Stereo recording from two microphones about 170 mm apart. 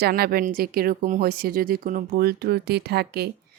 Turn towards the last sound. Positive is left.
turn(degrees=-70)  # may be behind; listen again after turning